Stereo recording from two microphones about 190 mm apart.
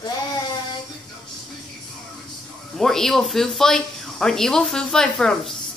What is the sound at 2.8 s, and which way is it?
Speech, centre (ahead or behind).